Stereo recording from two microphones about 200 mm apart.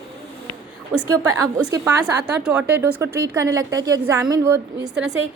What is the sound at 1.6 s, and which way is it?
Speech, 20° right (ahead or behind).